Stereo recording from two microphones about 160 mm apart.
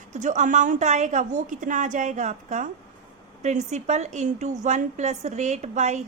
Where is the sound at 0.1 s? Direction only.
50° right (ahead or behind).